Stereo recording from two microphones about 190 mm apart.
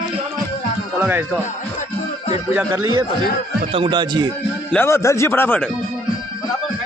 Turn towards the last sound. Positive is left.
turn(degrees=10)  # may be behind; listen again after turning